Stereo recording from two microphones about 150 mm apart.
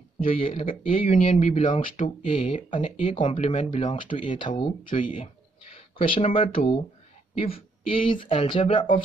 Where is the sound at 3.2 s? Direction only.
50° left (ahead or behind).